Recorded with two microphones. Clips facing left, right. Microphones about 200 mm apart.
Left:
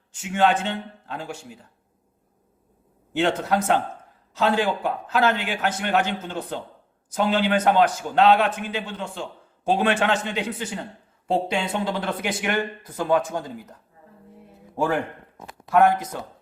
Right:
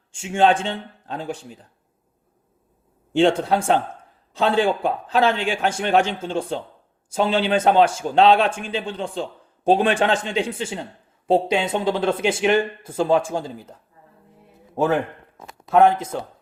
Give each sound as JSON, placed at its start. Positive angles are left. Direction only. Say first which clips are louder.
{"t": 0.1, "sound": "speech", "louder": "right 3 dB", "side_deg": -25}
{"t": 3.1, "sound": "a man's voice", "louder": "right 5 dB", "side_deg": -30}
{"t": 14.8, "sound": "a man's voice", "louder": "right 3 dB", "side_deg": -25}